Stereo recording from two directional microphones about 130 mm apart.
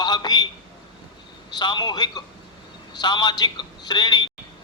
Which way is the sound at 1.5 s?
35° left (ahead or behind).